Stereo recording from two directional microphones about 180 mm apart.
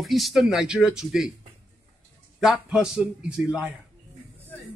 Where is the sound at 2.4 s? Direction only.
5° right (ahead or behind).